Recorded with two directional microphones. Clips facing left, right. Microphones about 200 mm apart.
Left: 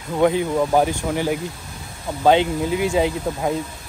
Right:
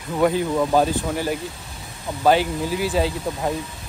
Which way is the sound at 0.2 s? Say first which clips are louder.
Left 1 dB; 20° left (ahead or behind).